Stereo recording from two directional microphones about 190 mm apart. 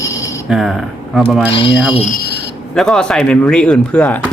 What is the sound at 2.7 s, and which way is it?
Speech, 5° left (ahead or behind).